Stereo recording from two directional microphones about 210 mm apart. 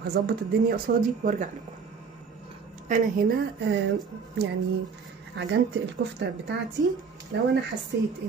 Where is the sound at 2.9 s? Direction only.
40° right (ahead or behind).